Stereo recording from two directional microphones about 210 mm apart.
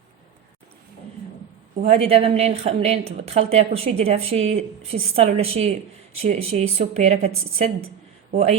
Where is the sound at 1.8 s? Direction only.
30° right (ahead or behind).